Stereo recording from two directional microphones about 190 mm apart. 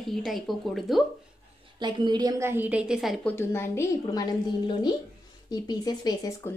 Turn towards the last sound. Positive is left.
turn(degrees=20)  # may be behind; listen again after turning